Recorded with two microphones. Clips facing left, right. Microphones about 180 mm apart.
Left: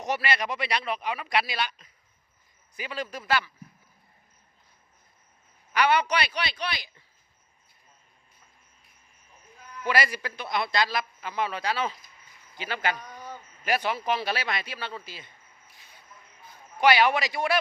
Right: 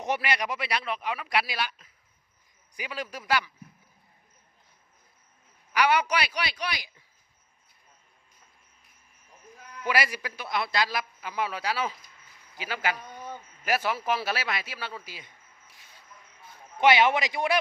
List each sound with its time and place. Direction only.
0.0 s a man's voice: 15° right (ahead or behind)
5.7 s a man's voice: 10° right (ahead or behind)
9.8 s a man's voice: 10° right (ahead or behind)
13.1 s speech: 20° right (ahead or behind)
13.7 s speech: 5° right (ahead or behind)
16.7 s speech: 20° right (ahead or behind)